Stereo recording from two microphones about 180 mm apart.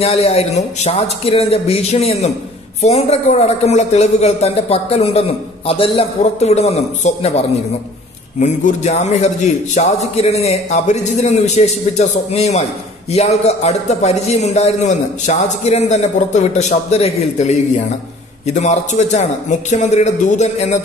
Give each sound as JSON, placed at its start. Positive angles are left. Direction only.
{"t": 0.0, "sound": "a man's voice", "side_deg": 35}